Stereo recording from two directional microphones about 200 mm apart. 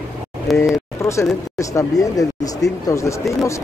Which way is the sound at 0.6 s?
15° left (ahead or behind).